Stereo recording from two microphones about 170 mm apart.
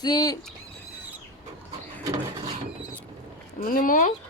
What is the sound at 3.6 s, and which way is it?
Speech, 55° left (ahead or behind).